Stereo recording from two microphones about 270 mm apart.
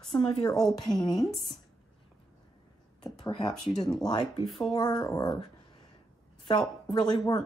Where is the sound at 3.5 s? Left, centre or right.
Centre.